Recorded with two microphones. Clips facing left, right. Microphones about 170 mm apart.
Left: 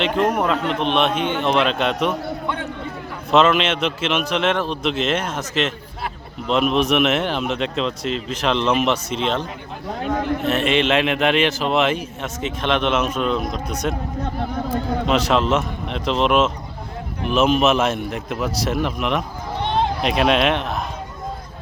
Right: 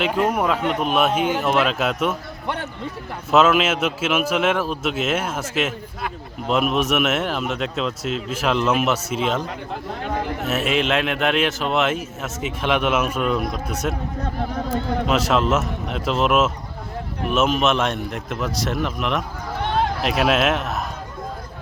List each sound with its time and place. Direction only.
0.0 s a man's voice: 10° right (ahead or behind)
3.3 s a man's voice: 5° right (ahead or behind)